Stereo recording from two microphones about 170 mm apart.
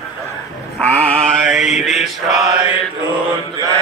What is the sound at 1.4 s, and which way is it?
Mantra, centre (ahead or behind).